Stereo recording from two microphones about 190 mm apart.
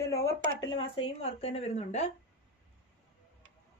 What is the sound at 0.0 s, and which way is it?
Speech, 15° left (ahead or behind).